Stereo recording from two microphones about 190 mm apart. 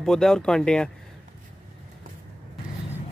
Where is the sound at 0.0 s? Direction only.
5° left (ahead or behind).